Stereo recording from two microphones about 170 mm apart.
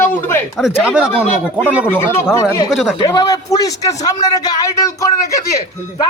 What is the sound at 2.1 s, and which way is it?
A man's voice, 15° left (ahead or behind).